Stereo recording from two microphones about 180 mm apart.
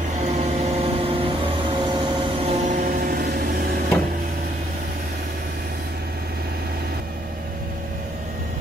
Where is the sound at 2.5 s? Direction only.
45° right (ahead or behind).